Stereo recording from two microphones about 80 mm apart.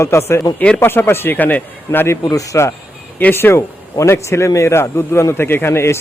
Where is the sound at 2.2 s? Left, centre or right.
Left.